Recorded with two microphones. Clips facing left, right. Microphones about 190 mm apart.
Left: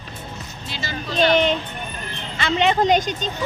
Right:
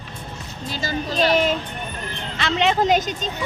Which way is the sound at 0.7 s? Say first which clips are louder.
Right 4 dB; 40° right (ahead or behind).